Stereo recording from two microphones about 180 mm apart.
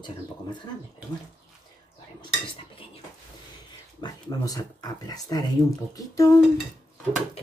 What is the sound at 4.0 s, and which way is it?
Speech, 20° left (ahead or behind).